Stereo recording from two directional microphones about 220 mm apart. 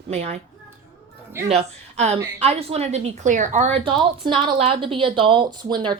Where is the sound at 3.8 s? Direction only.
20° right (ahead or behind).